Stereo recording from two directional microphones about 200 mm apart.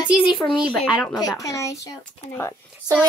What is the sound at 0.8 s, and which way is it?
Speech, centre (ahead or behind).